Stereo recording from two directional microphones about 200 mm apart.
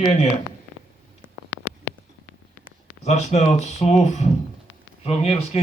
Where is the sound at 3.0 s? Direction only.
35° left (ahead or behind).